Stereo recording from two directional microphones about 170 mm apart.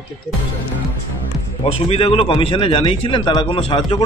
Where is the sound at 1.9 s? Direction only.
35° left (ahead or behind).